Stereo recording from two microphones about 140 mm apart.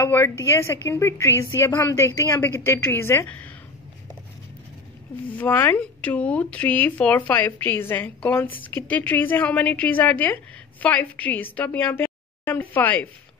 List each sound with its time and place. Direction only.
0.0 s a woman's voice: 20° left (ahead or behind)
5.4 s speech: 15° left (ahead or behind)